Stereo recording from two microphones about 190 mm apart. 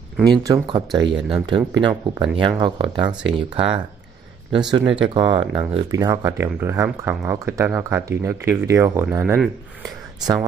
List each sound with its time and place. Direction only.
0.2 s speech: 20° right (ahead or behind)